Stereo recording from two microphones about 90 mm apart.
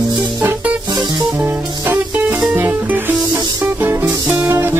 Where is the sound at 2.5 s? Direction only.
20° right (ahead or behind).